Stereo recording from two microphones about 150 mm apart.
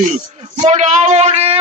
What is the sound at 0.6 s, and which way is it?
Speech, 50° right (ahead or behind).